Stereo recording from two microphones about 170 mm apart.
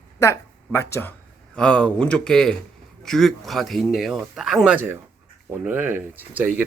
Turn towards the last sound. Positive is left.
turn(degrees=-10)  # may be behind; listen again after turning